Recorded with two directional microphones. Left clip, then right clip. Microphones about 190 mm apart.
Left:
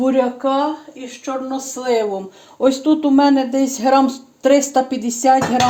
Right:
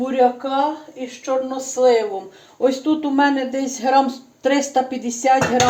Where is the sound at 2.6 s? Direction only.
45° left (ahead or behind).